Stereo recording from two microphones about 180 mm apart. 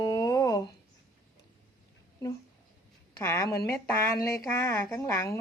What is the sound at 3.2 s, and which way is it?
A woman's voice, 15° left (ahead or behind).